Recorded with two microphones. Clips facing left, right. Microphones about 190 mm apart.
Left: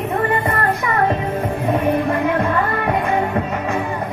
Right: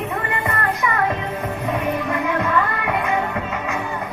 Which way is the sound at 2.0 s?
35° left (ahead or behind).